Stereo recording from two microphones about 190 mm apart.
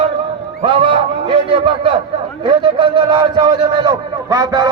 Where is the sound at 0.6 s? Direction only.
25° right (ahead or behind).